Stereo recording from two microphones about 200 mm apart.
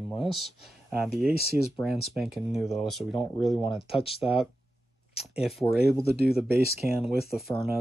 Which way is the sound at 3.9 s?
25° left (ahead or behind).